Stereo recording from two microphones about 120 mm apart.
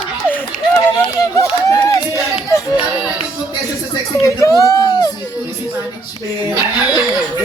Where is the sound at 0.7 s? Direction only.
25° left (ahead or behind).